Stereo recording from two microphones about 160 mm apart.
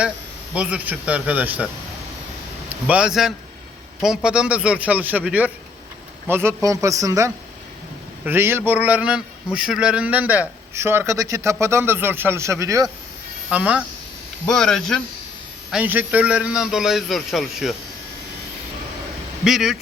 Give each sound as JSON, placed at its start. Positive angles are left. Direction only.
{"t": 0.5, "sound": "a man's voice", "side_deg": -10}
{"t": 2.8, "sound": "a man's voice", "side_deg": -5}
{"t": 13.5, "sound": "a man's voice", "side_deg": -10}
{"t": 14.4, "sound": "a man's voice", "side_deg": 5}
{"t": 15.7, "sound": "a man's voice", "side_deg": -10}
{"t": 19.5, "sound": "a man's voice", "side_deg": 0}